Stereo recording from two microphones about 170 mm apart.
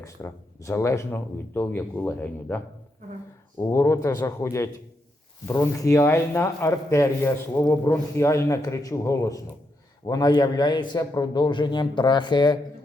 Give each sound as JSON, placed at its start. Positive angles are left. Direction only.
{"t": 0.0, "sound": "speech", "side_deg": 15}
{"t": 3.6, "sound": "a man's voice", "side_deg": 15}